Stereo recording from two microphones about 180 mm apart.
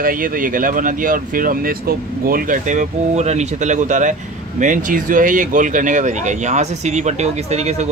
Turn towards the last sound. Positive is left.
turn(degrees=-35)  # may be behind; listen again after turning